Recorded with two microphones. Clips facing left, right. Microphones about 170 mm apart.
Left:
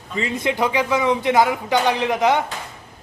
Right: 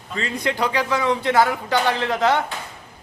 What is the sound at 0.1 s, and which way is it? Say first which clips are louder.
A man's voice: left 2 dB; 20° left (ahead or behind).